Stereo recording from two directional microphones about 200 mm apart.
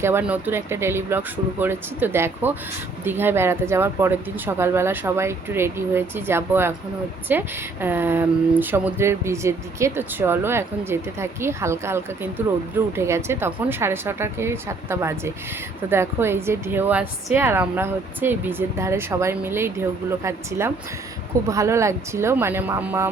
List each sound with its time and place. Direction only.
0.0 s speech: 10° right (ahead or behind)